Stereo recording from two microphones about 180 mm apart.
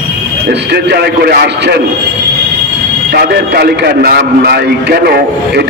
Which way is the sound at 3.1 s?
60° right (ahead or behind).